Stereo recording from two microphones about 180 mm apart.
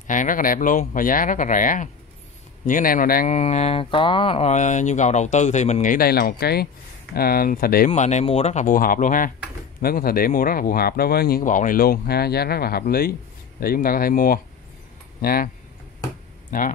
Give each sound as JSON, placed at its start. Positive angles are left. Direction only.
{"t": 0.0, "sound": "speech", "side_deg": 45}
{"t": 3.3, "sound": "speech", "side_deg": 35}
{"t": 7.9, "sound": "speech", "side_deg": 40}